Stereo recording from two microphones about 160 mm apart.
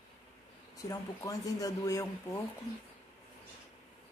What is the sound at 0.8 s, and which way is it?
Speech, 20° left (ahead or behind).